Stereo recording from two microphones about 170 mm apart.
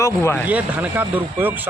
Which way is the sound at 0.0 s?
15° left (ahead or behind).